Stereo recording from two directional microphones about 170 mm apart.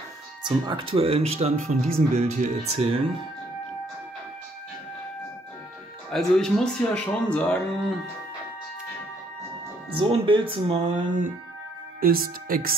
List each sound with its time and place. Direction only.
0.4 s speech: 25° right (ahead or behind)
6.1 s speech: 5° left (ahead or behind)
9.9 s speech: 30° right (ahead or behind); by 12.7 s 60° right (ahead or behind)